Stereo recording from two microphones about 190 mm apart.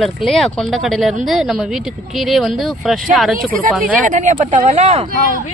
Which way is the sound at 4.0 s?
40° right (ahead or behind).